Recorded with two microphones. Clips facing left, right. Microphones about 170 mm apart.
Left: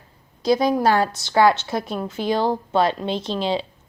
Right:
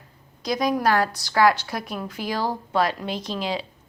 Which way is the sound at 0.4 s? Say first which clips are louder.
Left 4 dB; 30° left (ahead or behind).